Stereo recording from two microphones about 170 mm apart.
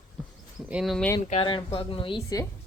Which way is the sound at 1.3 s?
30° left (ahead or behind).